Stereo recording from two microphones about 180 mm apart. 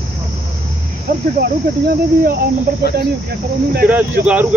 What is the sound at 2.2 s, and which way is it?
Cricket, 60° right (ahead or behind).